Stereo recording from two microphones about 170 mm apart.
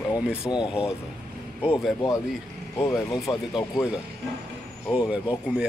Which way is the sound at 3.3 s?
30° left (ahead or behind).